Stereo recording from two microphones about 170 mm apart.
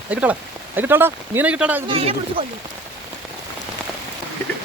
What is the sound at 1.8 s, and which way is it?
Speech, 35° right (ahead or behind).